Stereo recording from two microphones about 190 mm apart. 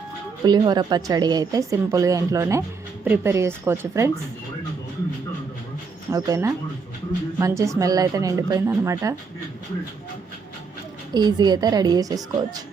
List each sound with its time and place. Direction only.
0.4 s a woman's voice: 20° right (ahead or behind)
6.1 s a woman's voice: 15° right (ahead or behind)
11.1 s a woman's voice: 20° right (ahead or behind)